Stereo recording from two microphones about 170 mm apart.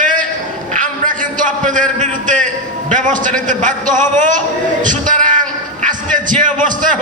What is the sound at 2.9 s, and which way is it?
A man's voice, 50° right (ahead or behind).